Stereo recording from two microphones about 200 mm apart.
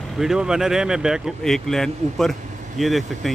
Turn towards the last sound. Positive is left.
turn(degrees=0)  # may be behind; listen again after turning